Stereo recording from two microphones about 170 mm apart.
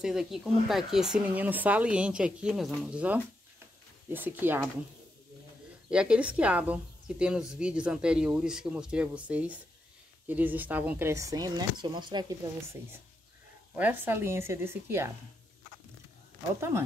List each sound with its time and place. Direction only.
0.0 s speech: centre (ahead or behind)
5.9 s speech: 5° right (ahead or behind); by 12.4 s 25° right (ahead or behind)
13.7 s speech: 10° right (ahead or behind)
16.5 s speech: 15° right (ahead or behind)